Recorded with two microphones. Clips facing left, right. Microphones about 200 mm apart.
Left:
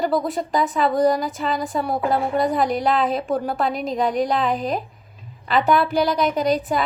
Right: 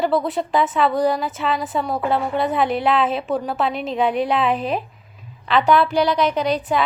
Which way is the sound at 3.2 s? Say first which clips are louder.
Even; centre (ahead or behind).